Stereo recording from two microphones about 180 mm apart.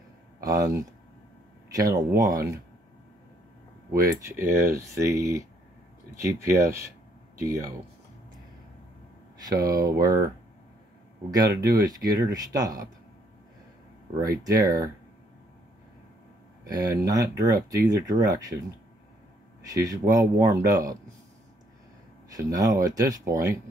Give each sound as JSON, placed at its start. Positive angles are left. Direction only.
{"t": 0.4, "sound": "speech", "side_deg": -20}
{"t": 4.2, "sound": "speech", "side_deg": -15}
{"t": 9.4, "sound": "speech", "side_deg": -20}
{"t": 11.2, "sound": "speech", "side_deg": -20}
{"t": 14.1, "sound": "speech", "side_deg": -20}
{"t": 16.6, "sound": "speech", "side_deg": -20}
{"t": 19.6, "sound": "speech", "side_deg": -20}
{"t": 22.3, "sound": "speech", "side_deg": -20}